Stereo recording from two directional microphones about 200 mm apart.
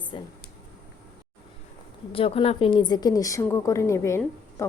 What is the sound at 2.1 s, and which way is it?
A woman's voice, 30° left (ahead or behind).